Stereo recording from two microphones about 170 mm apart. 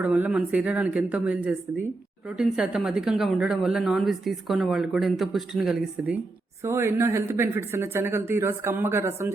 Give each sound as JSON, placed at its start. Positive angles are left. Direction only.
{"t": 0.0, "sound": "a woman's voice", "side_deg": -10}
{"t": 6.7, "sound": "speech", "side_deg": -15}